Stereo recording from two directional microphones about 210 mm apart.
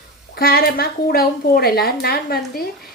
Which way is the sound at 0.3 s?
45° left (ahead or behind).